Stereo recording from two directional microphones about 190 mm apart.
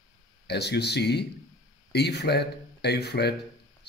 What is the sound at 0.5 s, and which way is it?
Speech, 60° left (ahead or behind).